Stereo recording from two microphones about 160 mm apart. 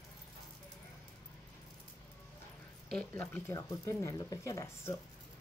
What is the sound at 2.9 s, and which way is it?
Speech, 5° left (ahead or behind).